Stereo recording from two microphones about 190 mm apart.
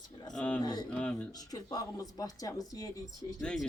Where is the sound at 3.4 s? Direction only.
5° left (ahead or behind).